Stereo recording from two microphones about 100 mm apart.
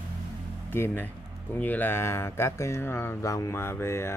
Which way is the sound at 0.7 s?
20° left (ahead or behind).